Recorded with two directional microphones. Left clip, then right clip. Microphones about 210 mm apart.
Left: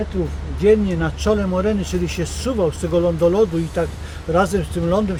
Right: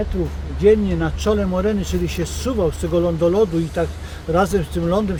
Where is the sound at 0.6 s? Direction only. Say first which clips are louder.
Even; 15° right (ahead or behind).